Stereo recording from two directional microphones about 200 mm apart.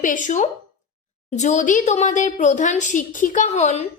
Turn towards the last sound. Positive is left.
turn(degrees=35)  # may be behind; listen again after turning